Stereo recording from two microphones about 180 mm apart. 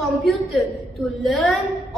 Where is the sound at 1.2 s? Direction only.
Centre (ahead or behind).